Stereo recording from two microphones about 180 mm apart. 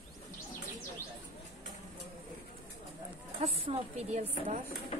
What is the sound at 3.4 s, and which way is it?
Speech, 35° right (ahead or behind).